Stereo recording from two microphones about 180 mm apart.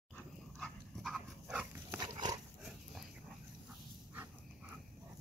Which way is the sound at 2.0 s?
20° right (ahead or behind).